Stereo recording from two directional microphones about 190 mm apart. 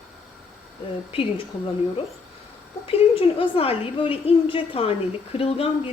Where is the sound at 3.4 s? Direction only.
30° left (ahead or behind).